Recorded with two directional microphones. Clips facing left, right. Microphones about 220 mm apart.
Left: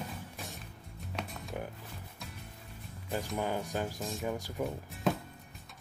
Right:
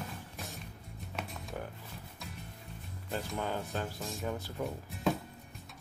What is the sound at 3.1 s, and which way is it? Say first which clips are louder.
Speech: left 2 dB; 15° left (ahead or behind).